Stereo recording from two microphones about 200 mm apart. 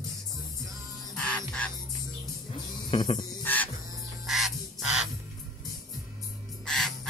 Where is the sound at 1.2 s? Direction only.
5° left (ahead or behind).